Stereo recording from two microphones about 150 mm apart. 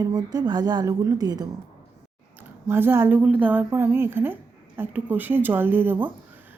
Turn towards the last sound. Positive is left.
turn(degrees=-15)  # may be behind; listen again after turning